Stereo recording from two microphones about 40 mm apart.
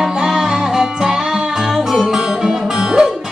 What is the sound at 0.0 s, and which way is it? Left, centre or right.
Music, centre.